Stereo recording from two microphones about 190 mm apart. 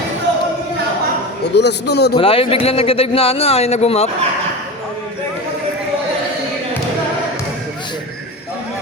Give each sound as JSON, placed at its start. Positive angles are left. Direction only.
{"t": 1.5, "sound": "a man's voice", "side_deg": 60}
{"t": 2.1, "sound": "speech", "side_deg": 30}